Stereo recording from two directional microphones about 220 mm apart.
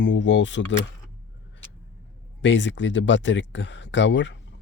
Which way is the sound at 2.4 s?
55° left (ahead or behind).